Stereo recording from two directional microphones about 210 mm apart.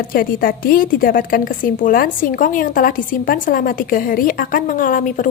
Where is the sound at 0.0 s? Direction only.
45° left (ahead or behind).